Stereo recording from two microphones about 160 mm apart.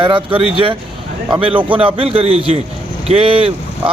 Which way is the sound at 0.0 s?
30° right (ahead or behind).